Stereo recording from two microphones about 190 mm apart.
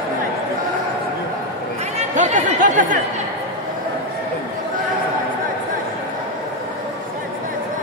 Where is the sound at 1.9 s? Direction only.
40° right (ahead or behind).